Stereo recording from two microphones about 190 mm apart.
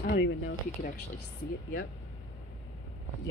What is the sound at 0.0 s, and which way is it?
Speech, 70° left (ahead or behind).